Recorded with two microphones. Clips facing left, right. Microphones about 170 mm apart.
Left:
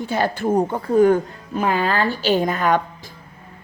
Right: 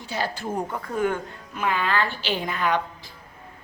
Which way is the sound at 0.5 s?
30° left (ahead or behind).